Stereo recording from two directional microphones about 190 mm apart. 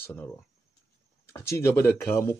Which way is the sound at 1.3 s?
15° left (ahead or behind).